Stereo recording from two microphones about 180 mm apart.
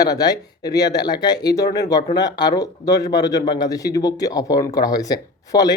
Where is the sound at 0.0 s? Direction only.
20° left (ahead or behind).